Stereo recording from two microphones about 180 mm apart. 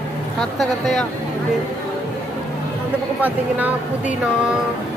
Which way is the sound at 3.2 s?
10° right (ahead or behind).